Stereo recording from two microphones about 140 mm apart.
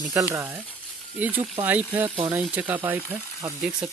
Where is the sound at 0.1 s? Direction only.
20° right (ahead or behind).